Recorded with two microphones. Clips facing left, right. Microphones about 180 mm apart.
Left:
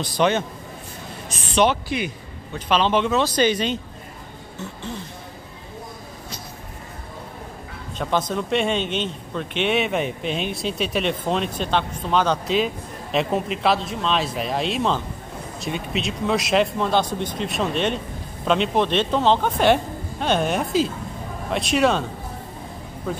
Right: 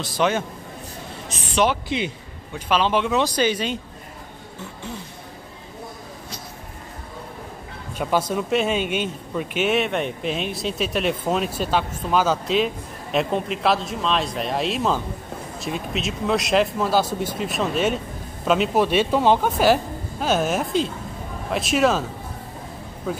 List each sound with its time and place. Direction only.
0.0 s a man's voice: centre (ahead or behind)
1.5 s speech: 5° right (ahead or behind)
1.9 s a man's voice: 25° right (ahead or behind)
2.5 s speech: 10° right (ahead or behind)
8.0 s a man's voice: 10° right (ahead or behind)